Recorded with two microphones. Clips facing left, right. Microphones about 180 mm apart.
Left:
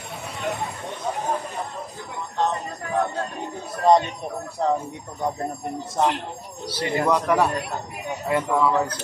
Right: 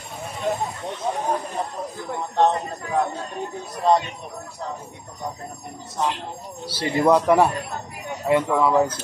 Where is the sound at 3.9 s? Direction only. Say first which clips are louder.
Left 2 dB; 15° left (ahead or behind).